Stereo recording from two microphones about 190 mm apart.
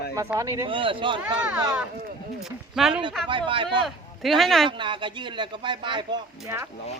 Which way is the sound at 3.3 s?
25° right (ahead or behind).